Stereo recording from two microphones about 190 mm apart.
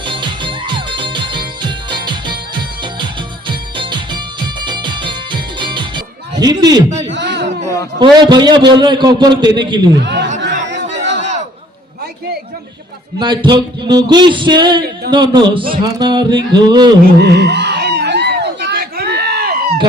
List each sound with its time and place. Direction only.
0.0 s music: 25° right (ahead or behind)
3.4 s music: 25° right (ahead or behind)
6.4 s a man's voice: 20° right (ahead or behind)
7.1 s music: 65° right (ahead or behind)
7.9 s a man's voice: 25° right (ahead or behind)
10.0 s speech: 65° right (ahead or behind)
10.7 s chatter: 70° right (ahead or behind)
13.1 s a man's voice: 25° right (ahead or behind)
17.0 s a sound: 55° right (ahead or behind)